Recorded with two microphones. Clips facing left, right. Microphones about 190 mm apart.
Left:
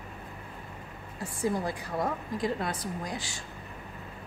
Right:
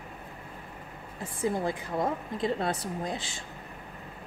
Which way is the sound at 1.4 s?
20° right (ahead or behind).